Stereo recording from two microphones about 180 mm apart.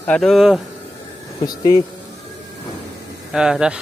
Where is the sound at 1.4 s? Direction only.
20° left (ahead or behind).